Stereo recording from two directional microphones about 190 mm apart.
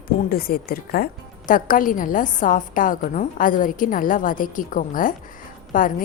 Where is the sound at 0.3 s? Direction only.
50° left (ahead or behind).